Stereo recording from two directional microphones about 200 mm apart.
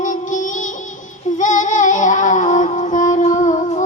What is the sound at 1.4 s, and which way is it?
Music, 40° left (ahead or behind).